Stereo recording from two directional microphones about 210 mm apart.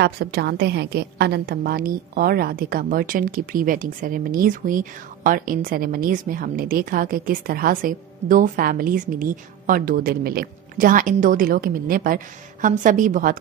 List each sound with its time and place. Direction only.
0.0 s a woman's voice: 50° right (ahead or behind)